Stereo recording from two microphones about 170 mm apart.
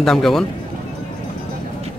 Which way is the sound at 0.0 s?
Centre (ahead or behind).